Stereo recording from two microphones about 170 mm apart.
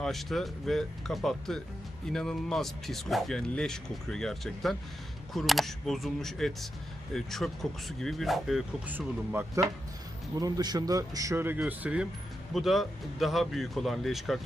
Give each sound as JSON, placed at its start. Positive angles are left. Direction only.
{"t": 0.0, "sound": "speech", "side_deg": 0}
{"t": 10.3, "sound": "speech", "side_deg": -20}